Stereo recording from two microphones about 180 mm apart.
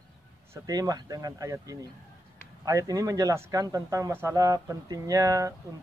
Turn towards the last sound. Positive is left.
turn(degrees=-20)  # may be behind; listen again after turning